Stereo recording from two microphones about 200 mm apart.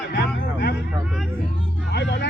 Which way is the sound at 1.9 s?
55° left (ahead or behind).